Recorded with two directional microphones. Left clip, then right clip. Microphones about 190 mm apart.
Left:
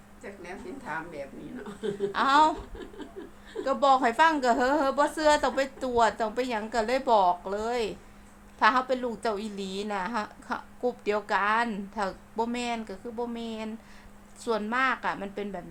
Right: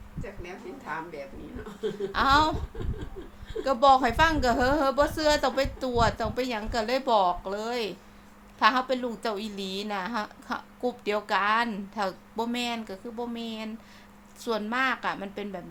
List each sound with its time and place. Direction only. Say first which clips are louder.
2.1 s a woman's voice: left 1 dB; centre (ahead or behind)
3.6 s a woman's voice: right 2 dB; 5° right (ahead or behind)